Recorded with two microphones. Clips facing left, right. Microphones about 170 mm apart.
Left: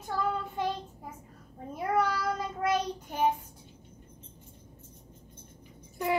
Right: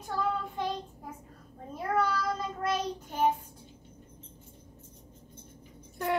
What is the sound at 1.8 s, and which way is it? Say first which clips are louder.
Child singing: left 1 dB; 10° left (ahead or behind).